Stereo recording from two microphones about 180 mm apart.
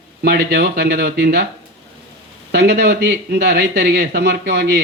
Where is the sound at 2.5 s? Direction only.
65° right (ahead or behind).